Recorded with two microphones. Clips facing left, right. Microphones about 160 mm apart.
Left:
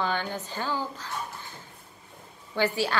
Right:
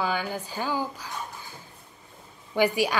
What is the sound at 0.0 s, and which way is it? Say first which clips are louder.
A woman's voice: right 1 dB; 10° right (ahead or behind).